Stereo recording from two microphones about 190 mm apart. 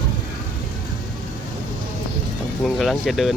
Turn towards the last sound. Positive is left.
turn(degrees=0)  # may be behind; listen again after turning